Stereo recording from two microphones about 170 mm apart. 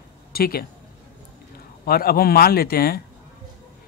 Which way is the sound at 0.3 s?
60° left (ahead or behind).